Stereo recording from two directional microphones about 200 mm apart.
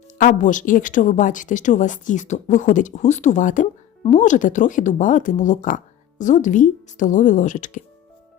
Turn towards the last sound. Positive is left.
turn(degrees=40)  # may be behind; listen again after turning